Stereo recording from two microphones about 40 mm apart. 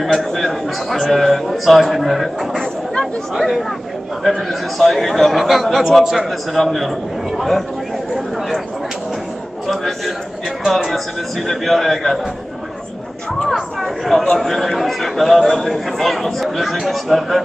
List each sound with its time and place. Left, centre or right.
0.0 s a man's voice: centre
2.6 s chatter: centre
3.3 s a man's voice: centre
9.7 s a man's voice: centre
11.4 s a man's voice: centre
13.5 s a man's voice: centre